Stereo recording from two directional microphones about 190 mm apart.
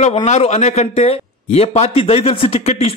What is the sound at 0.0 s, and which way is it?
A man's voice, 35° left (ahead or behind).